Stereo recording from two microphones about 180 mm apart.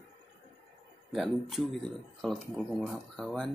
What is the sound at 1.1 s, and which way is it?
Speech, centre (ahead or behind).